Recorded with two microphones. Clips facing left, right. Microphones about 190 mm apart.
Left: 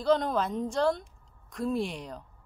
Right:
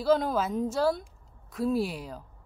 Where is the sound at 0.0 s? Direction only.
5° right (ahead or behind).